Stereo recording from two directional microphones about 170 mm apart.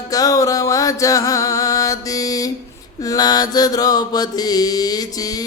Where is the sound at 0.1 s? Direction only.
20° left (ahead or behind).